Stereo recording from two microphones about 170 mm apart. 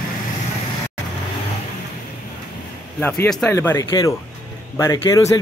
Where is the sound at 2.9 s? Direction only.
10° left (ahead or behind).